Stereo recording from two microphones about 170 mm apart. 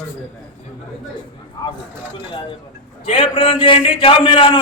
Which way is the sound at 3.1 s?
35° left (ahead or behind).